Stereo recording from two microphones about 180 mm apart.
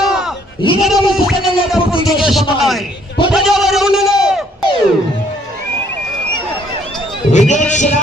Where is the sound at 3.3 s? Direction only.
Centre (ahead or behind).